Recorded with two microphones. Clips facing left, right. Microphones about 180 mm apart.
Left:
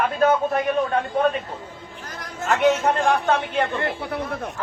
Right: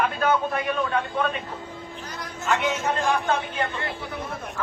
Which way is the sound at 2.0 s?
50° left (ahead or behind).